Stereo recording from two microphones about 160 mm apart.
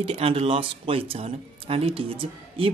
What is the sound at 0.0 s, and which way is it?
Speech, 40° right (ahead or behind).